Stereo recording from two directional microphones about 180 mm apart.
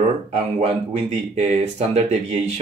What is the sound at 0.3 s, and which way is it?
Speech, 40° right (ahead or behind).